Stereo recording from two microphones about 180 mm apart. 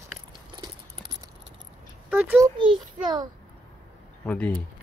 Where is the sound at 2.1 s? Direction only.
10° right (ahead or behind).